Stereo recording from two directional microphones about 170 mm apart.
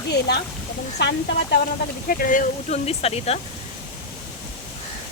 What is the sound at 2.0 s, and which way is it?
Speech, 55° left (ahead or behind).